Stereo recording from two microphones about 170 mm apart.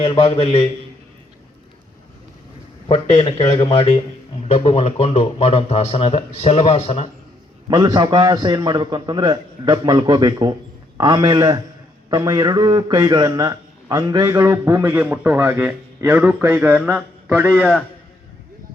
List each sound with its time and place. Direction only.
0.0 s speech: 30° left (ahead or behind)
2.9 s speech: 30° left (ahead or behind)
4.4 s speech: 35° left (ahead or behind)
7.7 s a man's voice: 25° right (ahead or behind)